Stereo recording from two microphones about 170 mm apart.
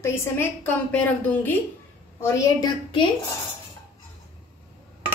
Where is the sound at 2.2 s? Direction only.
25° left (ahead or behind).